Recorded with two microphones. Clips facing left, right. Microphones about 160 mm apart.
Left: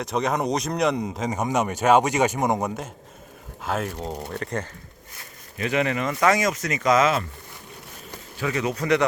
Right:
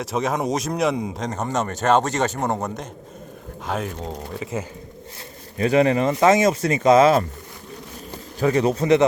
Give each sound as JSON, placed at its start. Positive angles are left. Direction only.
{"t": 0.0, "sound": "speech", "side_deg": 0}
{"t": 5.5, "sound": "speech", "side_deg": -35}
{"t": 8.4, "sound": "speech", "side_deg": -35}